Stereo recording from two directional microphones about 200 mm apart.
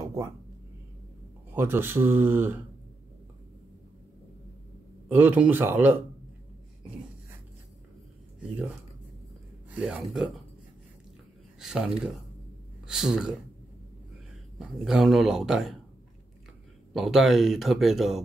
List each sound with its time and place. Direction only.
0.0 s a sound: 15° right (ahead or behind)
1.5 s speech: 10° right (ahead or behind)
5.0 s speech: 10° right (ahead or behind)
9.7 s speech: 5° right (ahead or behind)
11.6 s speech: 5° right (ahead or behind)
14.6 s speech: centre (ahead or behind)
16.9 s speech: centre (ahead or behind)